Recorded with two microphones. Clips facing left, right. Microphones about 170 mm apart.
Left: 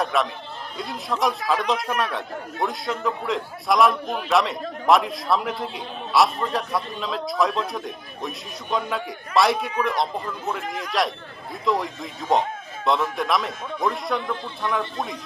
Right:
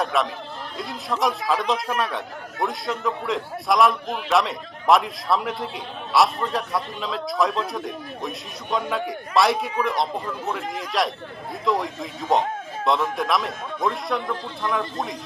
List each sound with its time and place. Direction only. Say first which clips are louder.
0.0 s chatter: even; centre (ahead or behind)
0.8 s speech: even; centre (ahead or behind)